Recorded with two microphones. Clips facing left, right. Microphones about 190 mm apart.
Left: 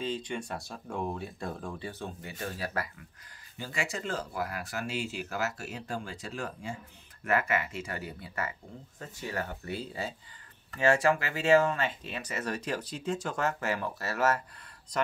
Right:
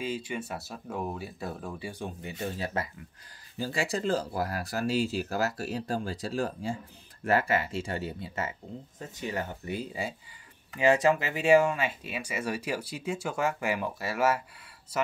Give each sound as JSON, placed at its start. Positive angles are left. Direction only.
{"t": 0.0, "sound": "speech", "side_deg": -5}
{"t": 3.5, "sound": "speech", "side_deg": -35}